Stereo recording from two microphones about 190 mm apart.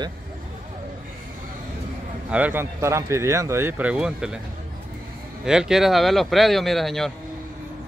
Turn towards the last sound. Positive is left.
turn(degrees=0)  # may be behind; listen again after turning